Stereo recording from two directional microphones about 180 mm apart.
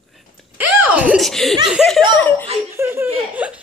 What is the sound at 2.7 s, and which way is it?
Speech, 15° right (ahead or behind).